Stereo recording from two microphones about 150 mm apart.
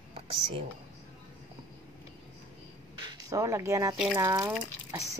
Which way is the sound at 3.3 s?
20° right (ahead or behind).